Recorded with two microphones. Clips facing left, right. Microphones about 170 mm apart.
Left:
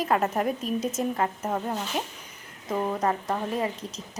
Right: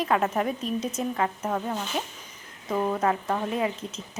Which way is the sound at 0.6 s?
45° left (ahead or behind).